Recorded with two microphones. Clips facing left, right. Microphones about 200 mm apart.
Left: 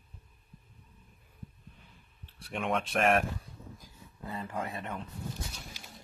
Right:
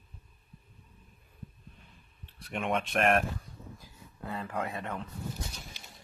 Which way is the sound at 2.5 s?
Centre (ahead or behind).